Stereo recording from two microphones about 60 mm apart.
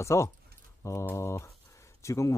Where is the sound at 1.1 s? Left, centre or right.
Left.